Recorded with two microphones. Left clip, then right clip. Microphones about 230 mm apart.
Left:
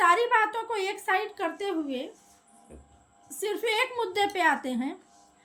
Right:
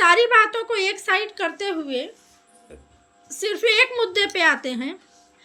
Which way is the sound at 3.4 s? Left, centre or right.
Centre.